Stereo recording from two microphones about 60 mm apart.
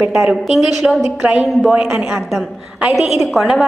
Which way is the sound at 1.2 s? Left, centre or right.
Centre.